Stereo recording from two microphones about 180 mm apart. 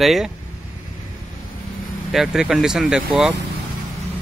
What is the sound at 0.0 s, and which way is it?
Speech, centre (ahead or behind).